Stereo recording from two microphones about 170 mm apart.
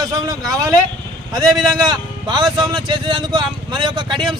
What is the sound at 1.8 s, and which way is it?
Speech, 25° right (ahead or behind).